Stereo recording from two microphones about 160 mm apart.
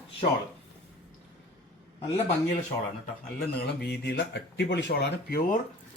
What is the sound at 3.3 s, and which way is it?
Speech, 75° left (ahead or behind).